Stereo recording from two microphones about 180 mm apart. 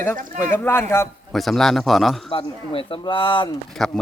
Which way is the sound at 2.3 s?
30° left (ahead or behind).